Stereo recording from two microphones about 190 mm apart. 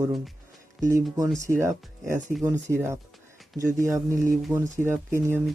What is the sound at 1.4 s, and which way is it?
Speech, 15° right (ahead or behind).